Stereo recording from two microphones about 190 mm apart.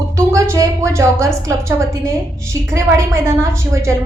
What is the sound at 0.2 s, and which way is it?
A woman's voice, 15° right (ahead or behind).